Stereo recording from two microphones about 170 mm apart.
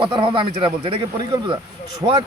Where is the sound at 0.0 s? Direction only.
30° right (ahead or behind).